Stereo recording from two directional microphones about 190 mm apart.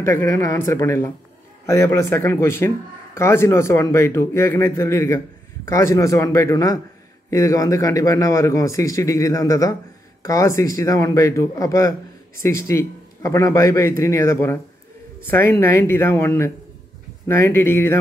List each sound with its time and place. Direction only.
0.0 s speech: 15° left (ahead or behind)